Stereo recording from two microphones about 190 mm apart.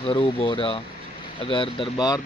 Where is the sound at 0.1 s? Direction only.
30° left (ahead or behind).